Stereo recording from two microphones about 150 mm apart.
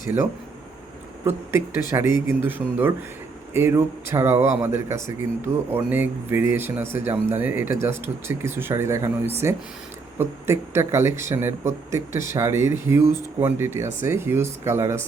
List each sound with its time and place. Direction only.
1.2 s speech: 15° right (ahead or behind)